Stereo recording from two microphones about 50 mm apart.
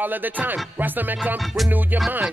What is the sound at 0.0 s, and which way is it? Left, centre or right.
Music, right.